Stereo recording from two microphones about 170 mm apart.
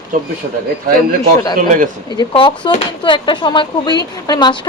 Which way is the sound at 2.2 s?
30° left (ahead or behind).